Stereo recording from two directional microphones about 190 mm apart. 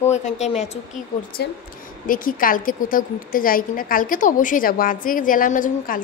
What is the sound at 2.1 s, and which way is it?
A woman's voice, 45° left (ahead or behind).